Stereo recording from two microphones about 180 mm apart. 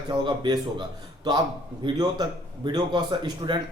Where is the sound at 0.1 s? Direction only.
25° right (ahead or behind).